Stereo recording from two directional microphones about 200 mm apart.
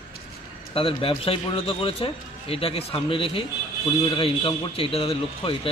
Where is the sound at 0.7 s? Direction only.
30° left (ahead or behind).